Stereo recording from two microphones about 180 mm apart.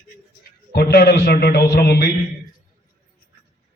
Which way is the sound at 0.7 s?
60° left (ahead or behind).